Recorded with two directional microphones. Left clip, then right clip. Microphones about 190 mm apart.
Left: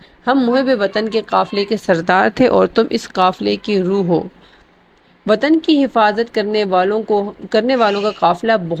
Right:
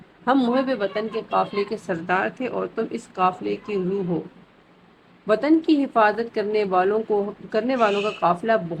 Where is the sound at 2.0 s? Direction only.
40° left (ahead or behind).